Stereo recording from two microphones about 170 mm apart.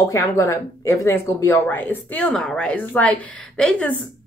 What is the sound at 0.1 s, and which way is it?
Speech, 15° left (ahead or behind).